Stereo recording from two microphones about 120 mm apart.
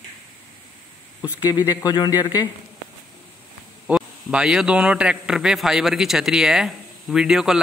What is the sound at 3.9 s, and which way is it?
A man's voice, 5° right (ahead or behind).